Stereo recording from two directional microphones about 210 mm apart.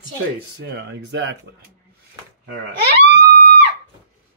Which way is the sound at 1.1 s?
55° right (ahead or behind).